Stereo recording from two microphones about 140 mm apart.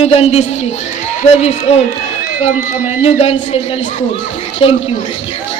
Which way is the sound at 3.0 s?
45° left (ahead or behind).